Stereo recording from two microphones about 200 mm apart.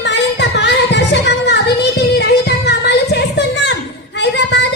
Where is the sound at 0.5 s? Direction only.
60° left (ahead or behind).